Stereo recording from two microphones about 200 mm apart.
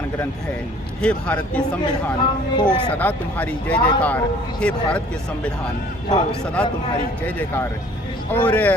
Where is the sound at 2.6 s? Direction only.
10° left (ahead or behind).